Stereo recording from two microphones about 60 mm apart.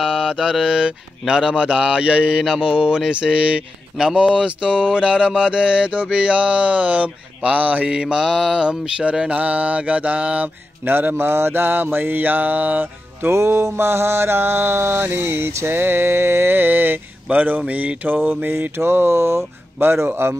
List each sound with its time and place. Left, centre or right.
0.0 s mantra: centre
0.3 s speech: centre; by 13.3 s right
13.3 s mantra: right
15.5 s a sound: right